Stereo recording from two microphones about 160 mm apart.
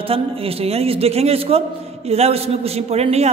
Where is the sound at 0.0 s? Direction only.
35° right (ahead or behind).